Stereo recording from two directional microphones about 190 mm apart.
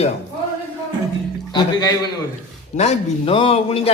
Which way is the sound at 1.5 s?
20° left (ahead or behind).